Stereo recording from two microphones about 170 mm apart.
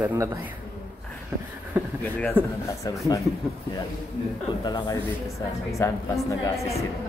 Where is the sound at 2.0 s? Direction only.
10° left (ahead or behind).